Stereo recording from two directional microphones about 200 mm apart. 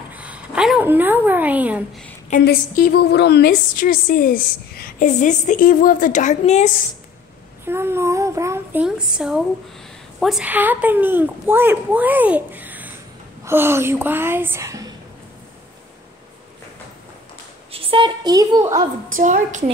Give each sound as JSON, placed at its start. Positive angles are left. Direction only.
{"t": 0.1, "sound": "a sound", "side_deg": -5}
{"t": 2.4, "sound": "a woman's voice", "side_deg": 50}
{"t": 7.6, "sound": "a woman's voice", "side_deg": -10}
{"t": 17.7, "sound": "a woman's voice", "side_deg": -25}
{"t": 19.1, "sound": "a woman's voice", "side_deg": -40}